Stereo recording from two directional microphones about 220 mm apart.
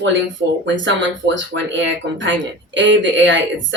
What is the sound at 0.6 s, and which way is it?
Speech, 55° right (ahead or behind).